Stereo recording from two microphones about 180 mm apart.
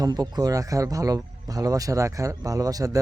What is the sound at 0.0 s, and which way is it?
Speech, 20° right (ahead or behind).